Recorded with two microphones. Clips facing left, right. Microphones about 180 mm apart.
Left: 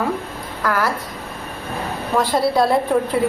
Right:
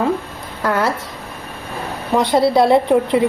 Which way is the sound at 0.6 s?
25° right (ahead or behind).